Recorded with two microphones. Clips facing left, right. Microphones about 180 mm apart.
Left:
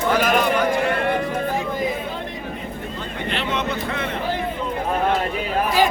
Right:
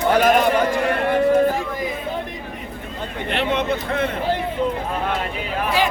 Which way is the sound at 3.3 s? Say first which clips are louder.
Right 4 dB; 55° right (ahead or behind).